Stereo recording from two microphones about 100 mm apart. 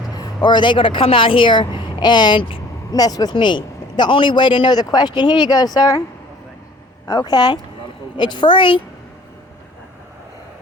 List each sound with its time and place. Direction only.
0.1 s speech: 40° left (ahead or behind); by 2.6 s 55° left (ahead or behind)
2.9 s speech: 40° left (ahead or behind)
3.3 s speech: 50° left (ahead or behind)
7.1 s speech: 40° left (ahead or behind)